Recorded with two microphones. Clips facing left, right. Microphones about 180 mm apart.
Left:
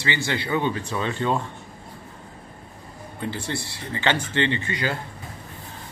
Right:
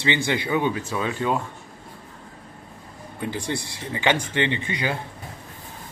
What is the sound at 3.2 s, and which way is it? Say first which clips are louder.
A man's voice: right 1 dB; 15° right (ahead or behind).